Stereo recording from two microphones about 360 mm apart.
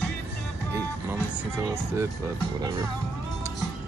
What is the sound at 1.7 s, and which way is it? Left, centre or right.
Speech, centre.